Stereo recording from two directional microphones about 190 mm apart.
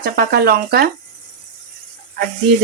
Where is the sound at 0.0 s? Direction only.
55° right (ahead or behind).